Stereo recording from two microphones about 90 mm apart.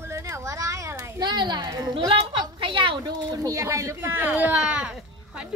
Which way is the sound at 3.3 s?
40° right (ahead or behind).